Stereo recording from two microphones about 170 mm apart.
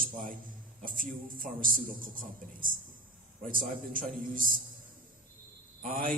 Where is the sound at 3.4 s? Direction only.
55° right (ahead or behind).